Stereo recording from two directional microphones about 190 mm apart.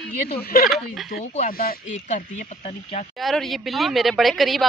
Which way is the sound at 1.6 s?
45° left (ahead or behind).